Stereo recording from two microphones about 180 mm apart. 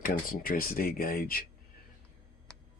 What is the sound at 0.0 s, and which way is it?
Speech, 50° left (ahead or behind).